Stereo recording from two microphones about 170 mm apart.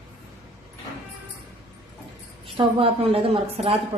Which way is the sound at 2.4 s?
30° right (ahead or behind).